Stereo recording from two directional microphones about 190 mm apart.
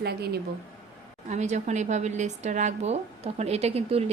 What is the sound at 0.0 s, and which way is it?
Speech, 55° right (ahead or behind).